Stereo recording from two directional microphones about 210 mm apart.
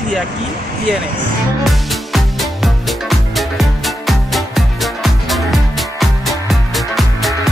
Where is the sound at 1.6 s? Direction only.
Centre (ahead or behind).